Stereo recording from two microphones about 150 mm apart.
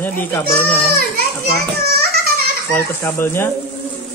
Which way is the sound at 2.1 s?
85° right.